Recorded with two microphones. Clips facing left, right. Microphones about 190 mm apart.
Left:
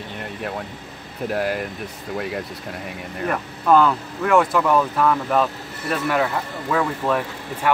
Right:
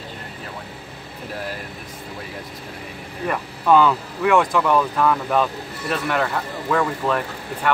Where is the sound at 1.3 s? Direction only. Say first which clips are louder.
Left 8 dB; 65° left (ahead or behind).